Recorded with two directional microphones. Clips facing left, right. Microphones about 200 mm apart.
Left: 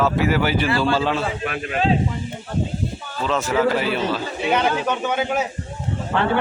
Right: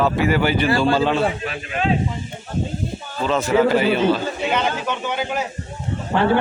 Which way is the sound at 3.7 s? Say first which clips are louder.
Right 4 dB; centre (ahead or behind).